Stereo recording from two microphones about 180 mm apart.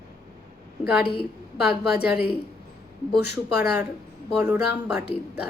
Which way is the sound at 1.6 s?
60° left (ahead or behind).